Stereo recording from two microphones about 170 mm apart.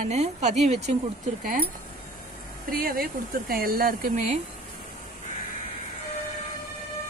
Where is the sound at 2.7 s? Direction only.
60° right (ahead or behind).